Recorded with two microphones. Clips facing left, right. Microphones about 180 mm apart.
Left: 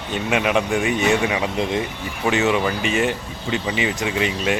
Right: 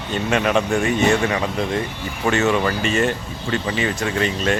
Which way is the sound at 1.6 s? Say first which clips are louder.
Even; 20° left (ahead or behind).